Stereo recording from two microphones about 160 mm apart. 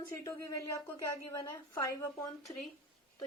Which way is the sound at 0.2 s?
20° left (ahead or behind).